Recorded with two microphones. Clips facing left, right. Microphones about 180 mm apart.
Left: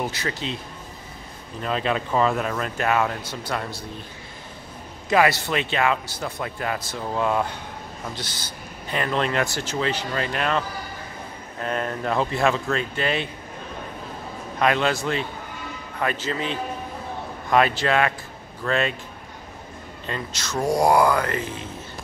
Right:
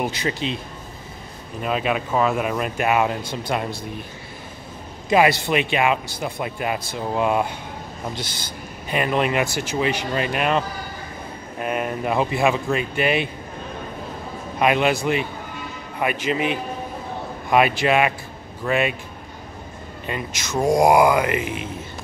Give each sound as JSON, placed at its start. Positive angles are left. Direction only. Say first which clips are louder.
{"t": 0.0, "sound": "a man's voice", "louder": "right 4 dB", "side_deg": -15}
{"t": 1.6, "sound": "a man's voice", "louder": "right 2 dB", "side_deg": -15}
{"t": 5.1, "sound": "a man's voice", "louder": "right 3 dB", "side_deg": -15}
{"t": 8.8, "sound": "a man's voice", "louder": "right 3 dB", "side_deg": -15}
{"t": 11.6, "sound": "a man's voice", "louder": "right 2 dB", "side_deg": -15}
{"t": 14.6, "sound": "a man's voice", "louder": "right 3 dB", "side_deg": -15}
{"t": 20.1, "sound": "a man's voice", "louder": "right 2 dB", "side_deg": -15}